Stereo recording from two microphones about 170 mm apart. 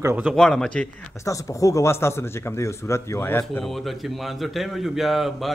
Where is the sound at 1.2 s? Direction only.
20° left (ahead or behind).